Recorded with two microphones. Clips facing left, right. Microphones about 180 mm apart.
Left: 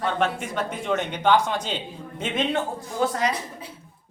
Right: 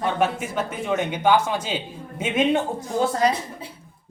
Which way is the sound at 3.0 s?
35° right (ahead or behind).